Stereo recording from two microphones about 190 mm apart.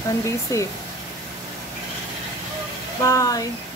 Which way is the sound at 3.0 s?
15° left (ahead or behind).